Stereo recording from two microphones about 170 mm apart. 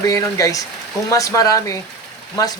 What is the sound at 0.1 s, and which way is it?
Speech, 20° left (ahead or behind).